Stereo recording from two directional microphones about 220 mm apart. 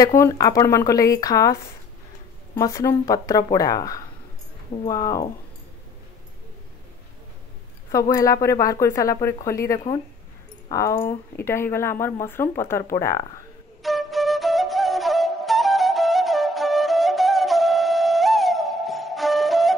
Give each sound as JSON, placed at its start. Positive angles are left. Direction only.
{"t": 0.2, "sound": "speech", "side_deg": 15}
{"t": 7.9, "sound": "speech", "side_deg": 15}
{"t": 13.8, "sound": "flute", "side_deg": 0}